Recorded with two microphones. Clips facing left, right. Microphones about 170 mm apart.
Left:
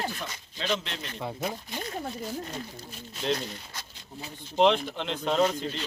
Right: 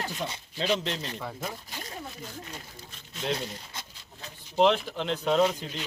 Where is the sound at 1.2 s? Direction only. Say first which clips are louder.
Left 3 dB; 15° left (ahead or behind).